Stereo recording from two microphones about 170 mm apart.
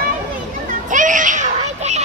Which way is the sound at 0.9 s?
50° right (ahead or behind).